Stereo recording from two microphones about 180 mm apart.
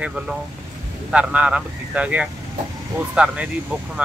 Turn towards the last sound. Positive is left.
turn(degrees=-5)  # may be behind; listen again after turning